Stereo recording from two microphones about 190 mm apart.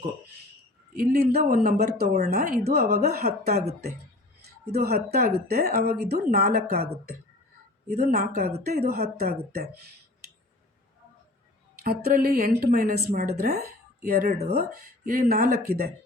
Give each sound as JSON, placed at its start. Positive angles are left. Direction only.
{"t": 0.9, "sound": "speech", "side_deg": -55}
{"t": 4.7, "sound": "speech", "side_deg": -55}
{"t": 7.9, "sound": "speech", "side_deg": -50}
{"t": 11.8, "sound": "speech", "side_deg": -50}